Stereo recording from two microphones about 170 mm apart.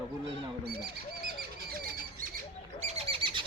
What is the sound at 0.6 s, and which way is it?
Bird, 70° right (ahead or behind).